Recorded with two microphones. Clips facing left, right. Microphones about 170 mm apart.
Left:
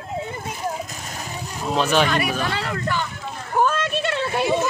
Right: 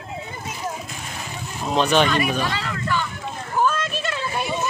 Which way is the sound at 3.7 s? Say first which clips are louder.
Left 2 dB; 65° left (ahead or behind).